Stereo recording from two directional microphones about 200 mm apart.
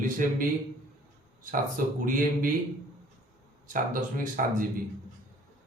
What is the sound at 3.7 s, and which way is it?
Speech, 40° right (ahead or behind).